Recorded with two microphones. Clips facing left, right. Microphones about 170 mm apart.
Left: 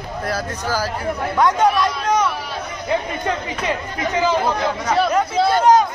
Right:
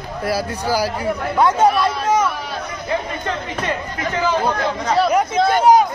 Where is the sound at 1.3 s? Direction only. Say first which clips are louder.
Right 1 dB; 5° right (ahead or behind).